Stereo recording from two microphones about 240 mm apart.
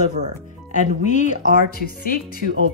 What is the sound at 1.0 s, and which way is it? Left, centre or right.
Speech, left.